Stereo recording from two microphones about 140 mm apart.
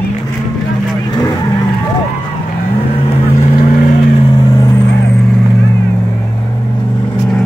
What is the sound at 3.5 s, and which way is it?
Vehicle, 90° left.